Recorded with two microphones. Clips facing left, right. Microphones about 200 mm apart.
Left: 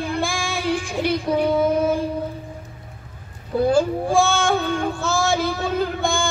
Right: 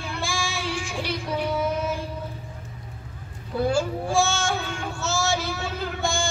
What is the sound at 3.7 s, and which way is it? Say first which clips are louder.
Child singing: left 6 dB; 55° left (ahead or behind).